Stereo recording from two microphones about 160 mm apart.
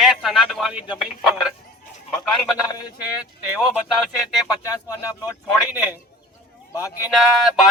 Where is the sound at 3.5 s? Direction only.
Centre (ahead or behind).